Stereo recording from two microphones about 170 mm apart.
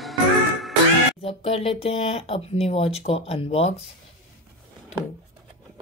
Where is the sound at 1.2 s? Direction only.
35° left (ahead or behind).